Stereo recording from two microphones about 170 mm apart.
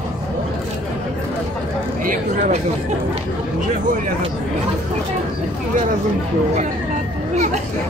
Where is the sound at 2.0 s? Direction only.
50° right (ahead or behind).